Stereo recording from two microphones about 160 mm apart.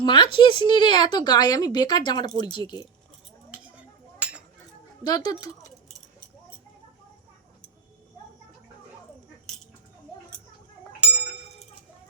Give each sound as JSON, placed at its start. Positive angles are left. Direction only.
{"t": 0.0, "sound": "speech", "side_deg": 30}
{"t": 5.0, "sound": "speech", "side_deg": 25}